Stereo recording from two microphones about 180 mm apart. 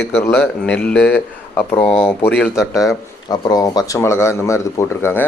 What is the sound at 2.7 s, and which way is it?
Speech, 20° left (ahead or behind).